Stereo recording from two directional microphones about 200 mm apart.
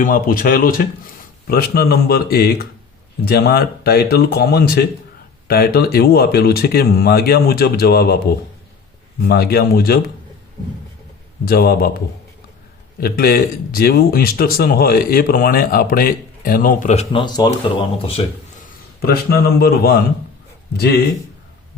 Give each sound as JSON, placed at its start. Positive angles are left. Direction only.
{"t": 0.0, "sound": "speech", "side_deg": 45}
{"t": 9.2, "sound": "speech", "side_deg": 50}
{"t": 11.4, "sound": "speech", "side_deg": 50}
{"t": 13.0, "sound": "speech", "side_deg": 50}
{"t": 19.0, "sound": "speech", "side_deg": 50}